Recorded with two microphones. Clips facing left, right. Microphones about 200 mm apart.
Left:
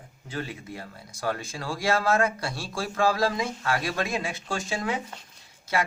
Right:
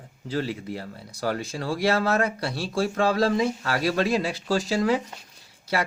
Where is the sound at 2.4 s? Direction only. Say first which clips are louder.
Right 4 dB; 65° right (ahead or behind).